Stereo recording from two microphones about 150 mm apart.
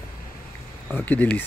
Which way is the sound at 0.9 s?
10° left (ahead or behind).